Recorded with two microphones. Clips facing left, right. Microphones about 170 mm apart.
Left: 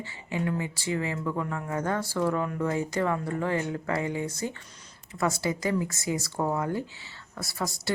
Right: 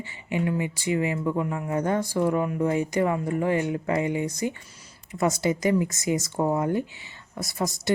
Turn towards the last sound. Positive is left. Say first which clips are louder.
# right 4 dB
turn(degrees=-20)  # may be behind; listen again after turning